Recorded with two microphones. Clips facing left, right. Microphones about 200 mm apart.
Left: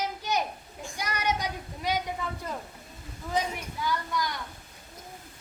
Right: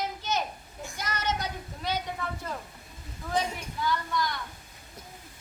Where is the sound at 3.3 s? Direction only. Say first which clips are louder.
Even; 10° left (ahead or behind).